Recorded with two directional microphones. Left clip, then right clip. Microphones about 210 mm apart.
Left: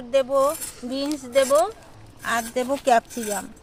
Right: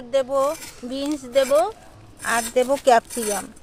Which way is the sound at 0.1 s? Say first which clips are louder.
Left 1 dB; 15° right (ahead or behind).